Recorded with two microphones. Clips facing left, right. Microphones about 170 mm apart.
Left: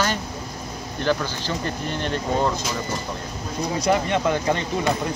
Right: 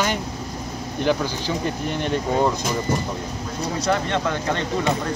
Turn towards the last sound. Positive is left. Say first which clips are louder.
# left 2 dB
turn(degrees=15)  # may be behind; listen again after turning